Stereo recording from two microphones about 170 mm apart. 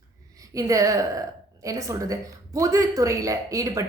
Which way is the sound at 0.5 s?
20° right (ahead or behind).